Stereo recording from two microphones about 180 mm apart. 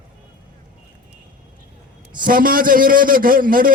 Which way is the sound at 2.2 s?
50° right (ahead or behind).